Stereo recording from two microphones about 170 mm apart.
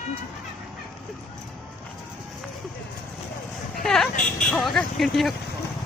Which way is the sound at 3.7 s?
Centre (ahead or behind).